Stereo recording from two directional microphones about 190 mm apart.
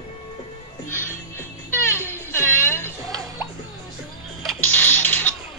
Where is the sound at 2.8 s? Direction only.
20° right (ahead or behind).